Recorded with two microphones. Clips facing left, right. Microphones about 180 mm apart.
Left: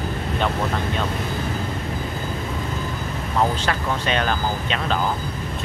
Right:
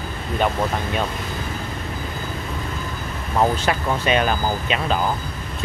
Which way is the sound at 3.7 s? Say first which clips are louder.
Right 3 dB; 10° right (ahead or behind).